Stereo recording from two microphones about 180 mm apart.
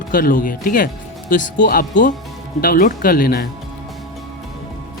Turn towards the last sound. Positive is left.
turn(degrees=55)  # may be behind; listen again after turning